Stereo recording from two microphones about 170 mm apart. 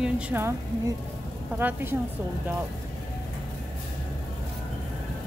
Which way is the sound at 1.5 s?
10° right (ahead or behind).